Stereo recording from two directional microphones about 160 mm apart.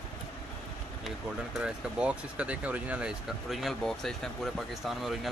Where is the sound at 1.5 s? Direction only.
5° right (ahead or behind).